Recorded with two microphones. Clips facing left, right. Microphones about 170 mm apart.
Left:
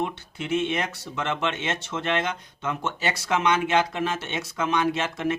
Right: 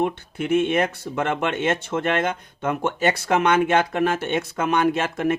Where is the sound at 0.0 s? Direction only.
55° right (ahead or behind).